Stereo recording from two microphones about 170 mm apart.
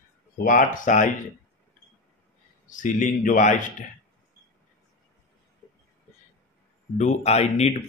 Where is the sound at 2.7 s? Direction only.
50° left (ahead or behind).